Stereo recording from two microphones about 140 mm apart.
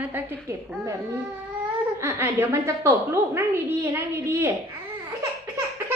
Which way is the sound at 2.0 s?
20° right (ahead or behind).